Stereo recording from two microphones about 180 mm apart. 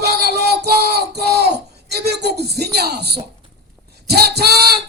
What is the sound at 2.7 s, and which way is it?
Speech, 65° right (ahead or behind).